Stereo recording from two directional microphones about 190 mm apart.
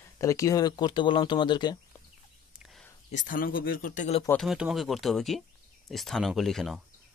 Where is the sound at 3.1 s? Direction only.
45° left (ahead or behind).